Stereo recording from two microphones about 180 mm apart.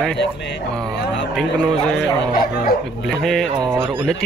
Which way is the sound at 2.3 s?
55° left (ahead or behind).